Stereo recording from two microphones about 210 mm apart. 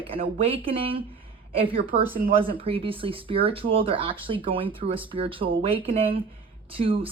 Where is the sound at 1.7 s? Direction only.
40° right (ahead or behind).